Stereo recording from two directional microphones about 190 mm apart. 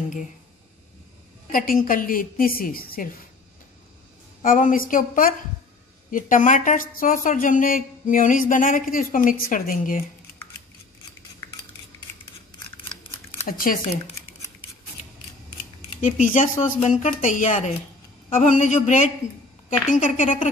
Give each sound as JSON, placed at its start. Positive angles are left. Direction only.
{"t": 1.5, "sound": "a woman's voice", "side_deg": 50}
{"t": 4.4, "sound": "a woman's voice", "side_deg": 45}
{"t": 13.5, "sound": "a woman's voice", "side_deg": 50}
{"t": 16.0, "sound": "a woman's voice", "side_deg": 40}